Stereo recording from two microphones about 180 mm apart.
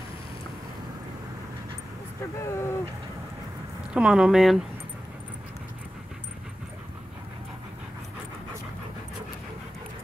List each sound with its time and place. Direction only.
2.4 s speech: 15° left (ahead or behind)
3.9 s speech: 5° right (ahead or behind)